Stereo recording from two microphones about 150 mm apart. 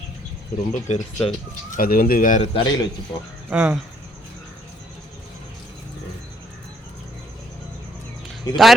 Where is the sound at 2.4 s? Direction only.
35° left (ahead or behind).